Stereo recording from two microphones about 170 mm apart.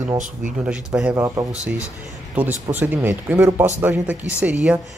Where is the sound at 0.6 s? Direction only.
5° right (ahead or behind).